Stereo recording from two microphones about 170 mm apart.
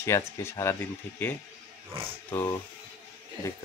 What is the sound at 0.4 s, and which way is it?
Speech, 15° left (ahead or behind).